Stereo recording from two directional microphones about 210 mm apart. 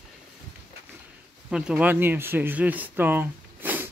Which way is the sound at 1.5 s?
5° right (ahead or behind).